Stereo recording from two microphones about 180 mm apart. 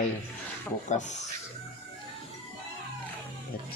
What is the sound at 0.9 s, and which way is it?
Speech, 40° left (ahead or behind).